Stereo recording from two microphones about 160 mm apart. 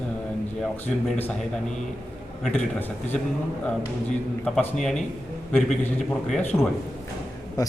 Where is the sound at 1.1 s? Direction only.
10° left (ahead or behind).